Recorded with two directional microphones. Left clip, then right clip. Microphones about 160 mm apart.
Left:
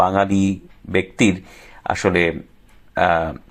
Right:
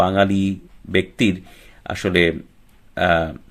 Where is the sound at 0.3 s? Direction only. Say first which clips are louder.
Left 2 dB; 30° left (ahead or behind).